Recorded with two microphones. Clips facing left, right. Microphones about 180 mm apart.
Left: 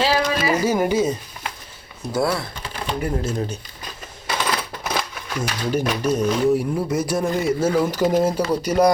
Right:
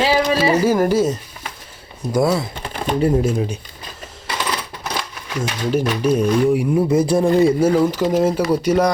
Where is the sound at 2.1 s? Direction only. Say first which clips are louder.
Right 4 dB; 20° right (ahead or behind).